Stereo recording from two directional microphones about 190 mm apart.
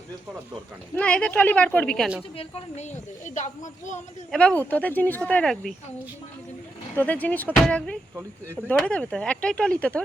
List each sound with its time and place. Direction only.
0.9 s speech: 5° left (ahead or behind)
2.3 s a woman's voice: 35° left (ahead or behind)
4.3 s speech: 5° left (ahead or behind)
6.9 s speech: 10° left (ahead or behind)